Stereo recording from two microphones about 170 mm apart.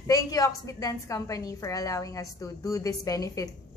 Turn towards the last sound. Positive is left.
turn(degrees=20)  # may be behind; listen again after turning